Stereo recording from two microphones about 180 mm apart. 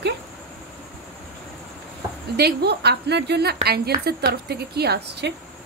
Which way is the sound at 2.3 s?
65° right (ahead or behind).